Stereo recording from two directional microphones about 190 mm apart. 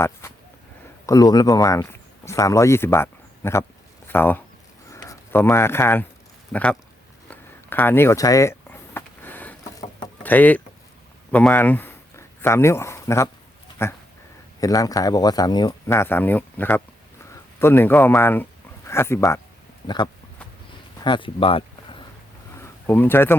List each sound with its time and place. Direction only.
0.0 s a sound: 10° left (ahead or behind)
1.0 s speech: 20° left (ahead or behind)
7.3 s a sound: 10° left (ahead or behind)
10.2 s speech: 10° left (ahead or behind)
14.6 s speech: 20° left (ahead or behind)
21.0 s speech: 25° left (ahead or behind)
22.6 s speech: 10° left (ahead or behind)